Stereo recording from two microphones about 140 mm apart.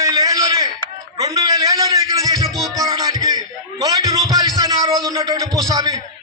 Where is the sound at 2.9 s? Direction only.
25° right (ahead or behind).